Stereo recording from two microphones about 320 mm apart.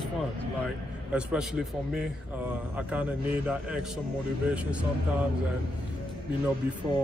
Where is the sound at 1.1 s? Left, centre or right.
Centre.